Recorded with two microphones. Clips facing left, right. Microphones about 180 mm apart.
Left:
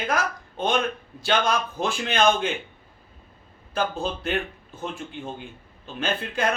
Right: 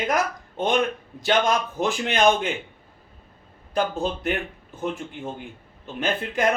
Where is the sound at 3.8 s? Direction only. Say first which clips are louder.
Right 2 dB; 15° right (ahead or behind).